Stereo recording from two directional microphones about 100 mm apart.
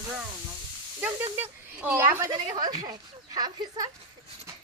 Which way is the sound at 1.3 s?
15° right (ahead or behind).